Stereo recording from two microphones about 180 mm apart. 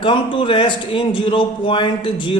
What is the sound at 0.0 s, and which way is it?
A man's voice, 30° left (ahead or behind).